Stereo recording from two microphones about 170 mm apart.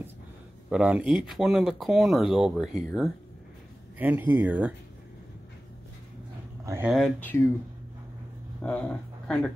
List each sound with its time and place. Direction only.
0.7 s speech: 5° right (ahead or behind)
6.6 s speech: 15° right (ahead or behind)
6.9 s speech: 5° left (ahead or behind)
8.6 s speech: 5° left (ahead or behind)